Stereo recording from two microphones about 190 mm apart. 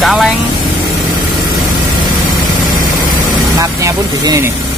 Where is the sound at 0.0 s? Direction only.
Centre (ahead or behind).